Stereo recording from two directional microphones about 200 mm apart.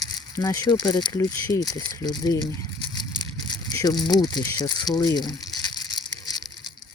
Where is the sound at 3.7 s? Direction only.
20° left (ahead or behind).